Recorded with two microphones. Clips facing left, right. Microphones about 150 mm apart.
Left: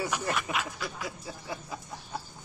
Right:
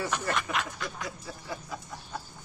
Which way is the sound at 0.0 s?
10° left (ahead or behind).